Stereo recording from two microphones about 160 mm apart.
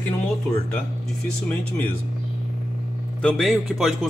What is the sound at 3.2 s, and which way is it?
Speech, 5° left (ahead or behind).